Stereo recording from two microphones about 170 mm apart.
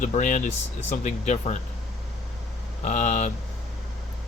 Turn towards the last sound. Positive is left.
turn(degrees=45)  # may be behind; listen again after turning